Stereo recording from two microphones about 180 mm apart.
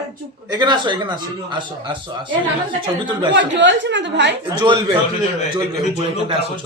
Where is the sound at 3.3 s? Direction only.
85° right.